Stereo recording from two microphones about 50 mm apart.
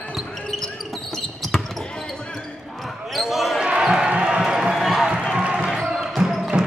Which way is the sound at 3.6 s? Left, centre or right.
Centre.